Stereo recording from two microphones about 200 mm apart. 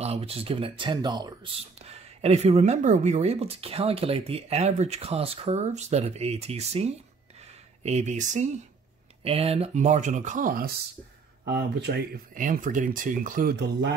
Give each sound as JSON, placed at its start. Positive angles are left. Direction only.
{"t": 0.0, "sound": "speech", "side_deg": -30}
{"t": 1.8, "sound": "speech", "side_deg": -30}
{"t": 7.3, "sound": "a sound", "side_deg": -35}
{"t": 9.2, "sound": "speech", "side_deg": -30}